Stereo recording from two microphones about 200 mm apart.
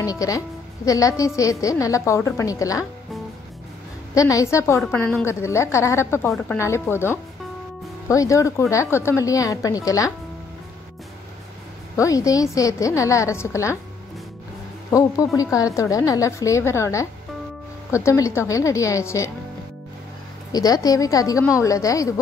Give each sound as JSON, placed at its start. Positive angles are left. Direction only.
{"t": 0.0, "sound": "a woman's voice", "side_deg": 15}
{"t": 4.1, "sound": "a woman's voice", "side_deg": 15}
{"t": 12.0, "sound": "a woman's voice", "side_deg": 15}
{"t": 14.9, "sound": "a woman's voice", "side_deg": 15}
{"t": 20.5, "sound": "a woman's voice", "side_deg": 20}